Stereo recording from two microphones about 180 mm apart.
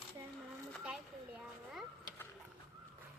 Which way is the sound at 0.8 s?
5° right (ahead or behind).